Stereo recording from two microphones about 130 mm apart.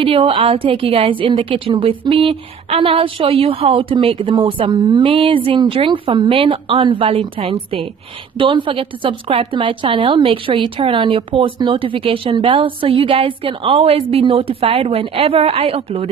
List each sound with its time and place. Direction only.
0.0 s a woman's voice: 45° right (ahead or behind)